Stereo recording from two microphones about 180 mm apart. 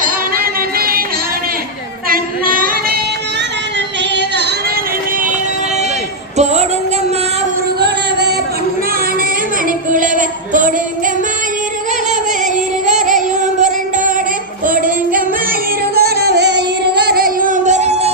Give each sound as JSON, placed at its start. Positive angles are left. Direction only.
{"t": 0.8, "sound": "music", "side_deg": -55}
{"t": 2.0, "sound": "a sound", "side_deg": -55}
{"t": 4.1, "sound": "yodeling", "side_deg": -70}
{"t": 6.3, "sound": "a sound", "side_deg": -40}
{"t": 7.8, "sound": "music", "side_deg": -65}
{"t": 9.6, "sound": "music", "side_deg": -50}
{"t": 12.8, "sound": "music", "side_deg": -45}
{"t": 16.0, "sound": "music", "side_deg": -60}